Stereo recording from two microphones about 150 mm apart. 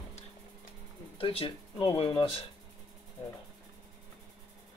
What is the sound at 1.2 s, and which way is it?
Speech, 35° left (ahead or behind).